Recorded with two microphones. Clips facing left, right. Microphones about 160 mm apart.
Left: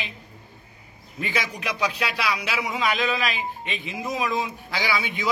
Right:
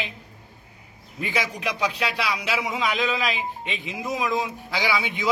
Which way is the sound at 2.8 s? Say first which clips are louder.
Left 3 dB; 15° right (ahead or behind).